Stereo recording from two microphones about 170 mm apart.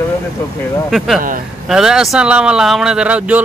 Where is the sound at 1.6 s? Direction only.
5° right (ahead or behind).